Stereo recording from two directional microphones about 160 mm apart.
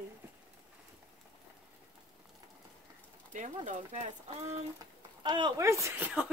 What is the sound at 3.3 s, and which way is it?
Speech, 50° right (ahead or behind).